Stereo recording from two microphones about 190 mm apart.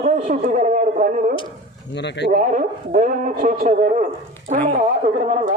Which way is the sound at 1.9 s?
65° left (ahead or behind).